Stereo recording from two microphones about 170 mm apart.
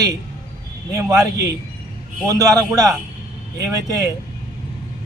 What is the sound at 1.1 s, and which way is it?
A man's voice, 20° right (ahead or behind).